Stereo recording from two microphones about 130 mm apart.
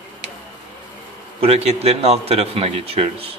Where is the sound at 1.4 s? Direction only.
50° right (ahead or behind).